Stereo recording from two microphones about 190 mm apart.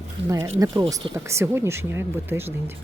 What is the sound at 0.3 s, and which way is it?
Speech, 15° right (ahead or behind).